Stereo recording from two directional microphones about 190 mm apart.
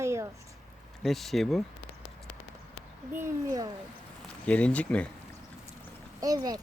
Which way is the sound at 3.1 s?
15° right (ahead or behind).